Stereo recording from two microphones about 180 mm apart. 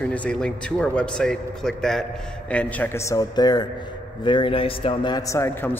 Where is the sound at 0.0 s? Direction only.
5° left (ahead or behind).